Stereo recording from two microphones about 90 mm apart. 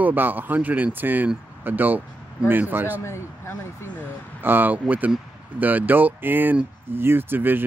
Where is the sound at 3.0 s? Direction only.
30° left (ahead or behind).